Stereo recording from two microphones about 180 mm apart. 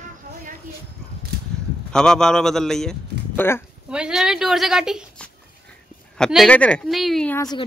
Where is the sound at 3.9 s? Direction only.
5° right (ahead or behind).